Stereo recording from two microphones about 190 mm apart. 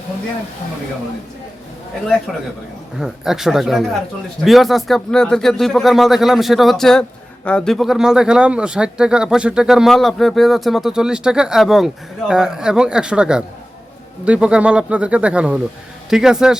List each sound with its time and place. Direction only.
3.0 s speech: centre (ahead or behind)